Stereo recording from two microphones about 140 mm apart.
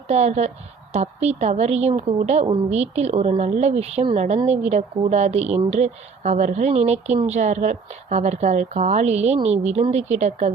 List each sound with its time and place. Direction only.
0.1 s a woman's voice: 50° right (ahead or behind)